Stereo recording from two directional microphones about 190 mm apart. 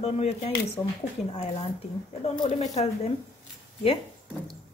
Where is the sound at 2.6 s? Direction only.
35° left (ahead or behind).